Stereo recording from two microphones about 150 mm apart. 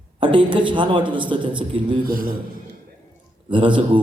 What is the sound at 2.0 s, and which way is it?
Speech, 70° right (ahead or behind).